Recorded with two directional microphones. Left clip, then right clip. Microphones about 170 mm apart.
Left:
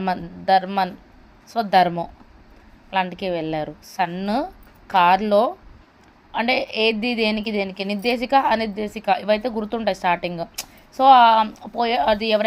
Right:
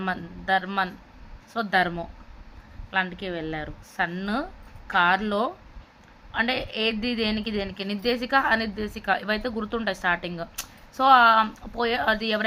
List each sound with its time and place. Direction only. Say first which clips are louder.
0.0 s a woman's voice: left 6 dB; 25° left (ahead or behind)